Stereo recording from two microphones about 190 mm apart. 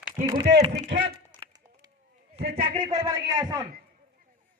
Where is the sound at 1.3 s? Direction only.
25° right (ahead or behind).